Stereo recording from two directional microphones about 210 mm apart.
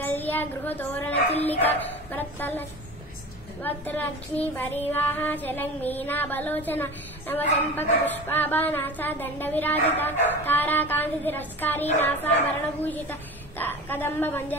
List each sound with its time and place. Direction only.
0.0 s child singing: 10° left (ahead or behind)
1.3 s speech: 30° left (ahead or behind)
1.6 s child singing: 10° left (ahead or behind)
3.6 s child singing: 10° left (ahead or behind)
12.8 s a woman's voice: 10° left (ahead or behind)